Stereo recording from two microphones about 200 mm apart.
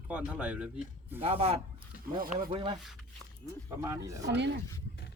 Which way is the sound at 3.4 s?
15° right (ahead or behind).